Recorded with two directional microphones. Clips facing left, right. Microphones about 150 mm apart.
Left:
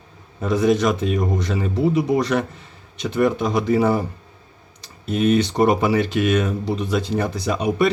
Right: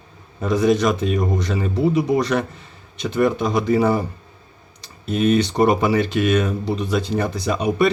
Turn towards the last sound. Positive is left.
turn(degrees=5)  # may be behind; listen again after turning